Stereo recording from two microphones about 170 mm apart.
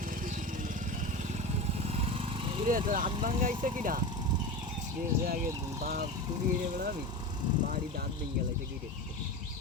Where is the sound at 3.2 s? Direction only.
50° right (ahead or behind).